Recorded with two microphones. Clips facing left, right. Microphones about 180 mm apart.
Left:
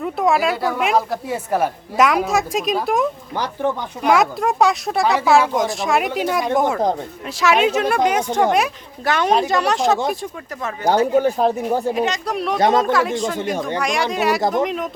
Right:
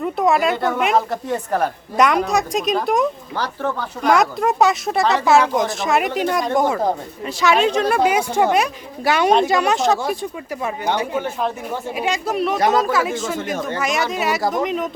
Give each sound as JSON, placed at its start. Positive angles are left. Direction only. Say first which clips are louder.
{"t": 0.0, "sound": "a woman's voice", "louder": "right 1 dB", "side_deg": 0}
{"t": 3.3, "sound": "speech", "louder": "left 2 dB", "side_deg": 15}
{"t": 4.1, "sound": "a woman's voice", "louder": "even", "side_deg": 0}
{"t": 7.9, "sound": "a woman's voice", "louder": "even", "side_deg": -10}
{"t": 10.8, "sound": "speech", "louder": "left 8 dB", "side_deg": 40}
{"t": 11.9, "sound": "a woman's voice", "louder": "even", "side_deg": -10}
{"t": 12.5, "sound": "speech", "louder": "left 2 dB", "side_deg": 25}
{"t": 12.8, "sound": "a woman's voice", "louder": "left 2 dB", "side_deg": -5}